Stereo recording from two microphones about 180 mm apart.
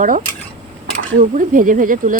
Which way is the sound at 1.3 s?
50° right (ahead or behind).